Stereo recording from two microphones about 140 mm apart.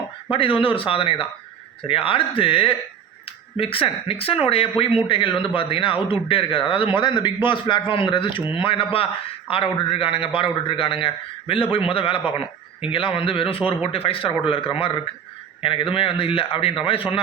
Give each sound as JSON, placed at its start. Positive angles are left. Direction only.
{"t": 0.3, "sound": "speech", "side_deg": 40}